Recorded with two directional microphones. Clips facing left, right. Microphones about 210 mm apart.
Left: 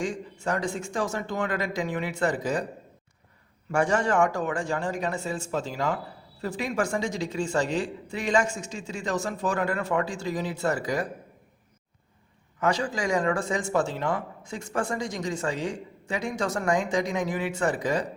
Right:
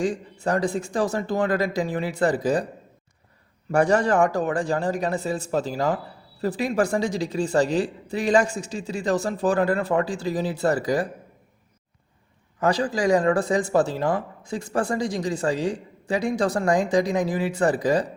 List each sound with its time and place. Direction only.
0.0 s speech: 35° right (ahead or behind)
3.7 s speech: 35° right (ahead or behind)
12.5 s speech: 35° right (ahead or behind)